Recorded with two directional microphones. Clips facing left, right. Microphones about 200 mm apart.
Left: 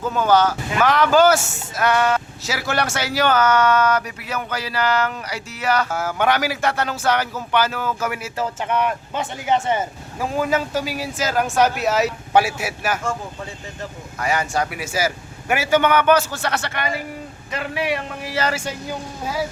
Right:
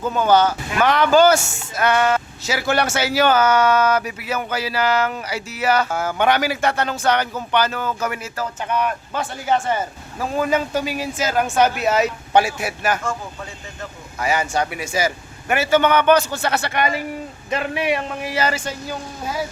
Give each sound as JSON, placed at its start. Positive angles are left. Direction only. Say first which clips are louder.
{"t": 0.0, "sound": "speech", "louder": "right 1 dB", "side_deg": 0}
{"t": 8.4, "sound": "speech", "louder": "left 1 dB", "side_deg": 25}
{"t": 10.3, "sound": "speech", "louder": "right 1 dB", "side_deg": 5}
{"t": 14.2, "sound": "a man's voice", "louder": "right 1 dB", "side_deg": 0}
{"t": 18.5, "sound": "a woman's voice", "louder": "even", "side_deg": 10}